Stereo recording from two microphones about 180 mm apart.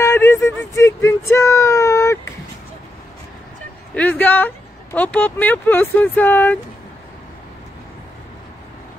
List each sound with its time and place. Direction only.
0.0 s speech: 15° left (ahead or behind)
3.9 s speech: 10° left (ahead or behind)